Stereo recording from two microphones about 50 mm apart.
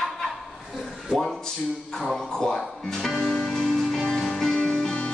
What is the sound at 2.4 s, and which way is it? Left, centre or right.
Music, centre.